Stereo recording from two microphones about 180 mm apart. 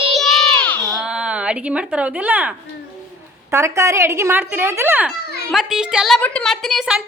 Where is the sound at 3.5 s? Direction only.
15° right (ahead or behind).